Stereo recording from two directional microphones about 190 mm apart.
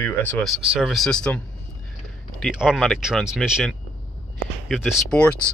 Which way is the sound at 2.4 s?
5° right (ahead or behind).